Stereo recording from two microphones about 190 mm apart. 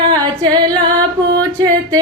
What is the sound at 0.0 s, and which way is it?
Female singing, 25° right (ahead or behind).